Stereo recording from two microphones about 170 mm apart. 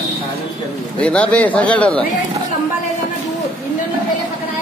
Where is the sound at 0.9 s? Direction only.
5° left (ahead or behind).